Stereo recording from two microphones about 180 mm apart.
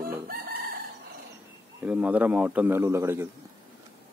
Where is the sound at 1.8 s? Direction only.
10° right (ahead or behind).